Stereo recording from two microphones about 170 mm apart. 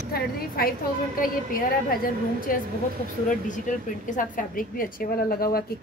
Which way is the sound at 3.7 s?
50° left (ahead or behind).